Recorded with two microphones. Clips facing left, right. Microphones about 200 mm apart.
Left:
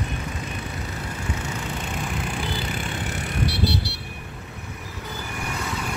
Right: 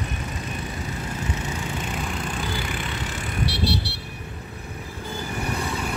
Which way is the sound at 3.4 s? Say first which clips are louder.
Even; 70° right (ahead or behind).